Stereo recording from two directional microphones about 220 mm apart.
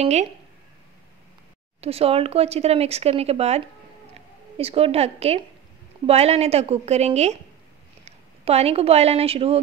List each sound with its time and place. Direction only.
0.0 s speech: 30° right (ahead or behind)
1.8 s a woman's voice: 25° right (ahead or behind)